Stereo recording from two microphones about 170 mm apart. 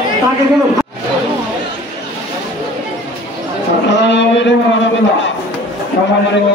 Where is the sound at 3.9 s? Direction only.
90° left.